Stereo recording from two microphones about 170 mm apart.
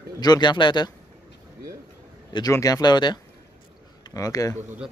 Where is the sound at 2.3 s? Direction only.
20° left (ahead or behind).